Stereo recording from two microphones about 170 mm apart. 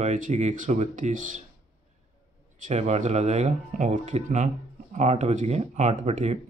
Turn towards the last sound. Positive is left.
turn(degrees=-40)  # may be behind; listen again after turning